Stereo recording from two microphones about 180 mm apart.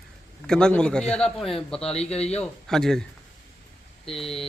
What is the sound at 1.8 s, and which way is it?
Speech, 35° left (ahead or behind).